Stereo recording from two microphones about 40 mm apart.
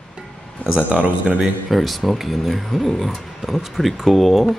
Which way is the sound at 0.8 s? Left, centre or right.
Right.